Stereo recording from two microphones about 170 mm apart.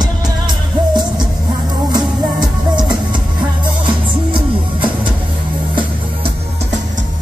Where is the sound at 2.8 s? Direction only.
25° right (ahead or behind).